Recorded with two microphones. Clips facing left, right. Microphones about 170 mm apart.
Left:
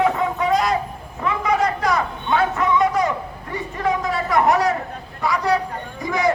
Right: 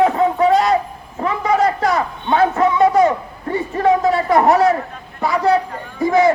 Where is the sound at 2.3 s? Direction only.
35° right (ahead or behind).